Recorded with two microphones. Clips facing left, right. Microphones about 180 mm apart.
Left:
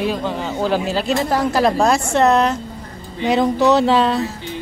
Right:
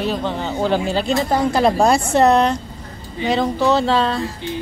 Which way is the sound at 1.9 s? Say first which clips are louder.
Right 1 dB; 35° right (ahead or behind).